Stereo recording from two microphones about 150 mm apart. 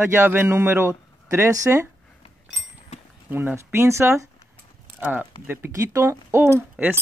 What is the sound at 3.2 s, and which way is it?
Speech, 15° right (ahead or behind).